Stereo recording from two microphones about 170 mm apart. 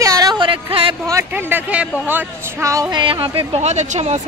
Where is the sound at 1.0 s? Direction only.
20° right (ahead or behind).